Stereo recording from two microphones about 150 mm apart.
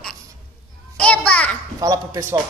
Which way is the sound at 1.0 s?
10° left (ahead or behind).